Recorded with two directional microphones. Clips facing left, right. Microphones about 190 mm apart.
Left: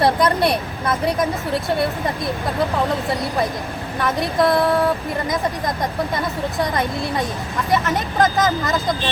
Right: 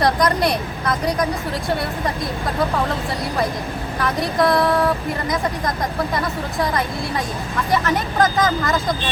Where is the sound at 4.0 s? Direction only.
Centre (ahead or behind).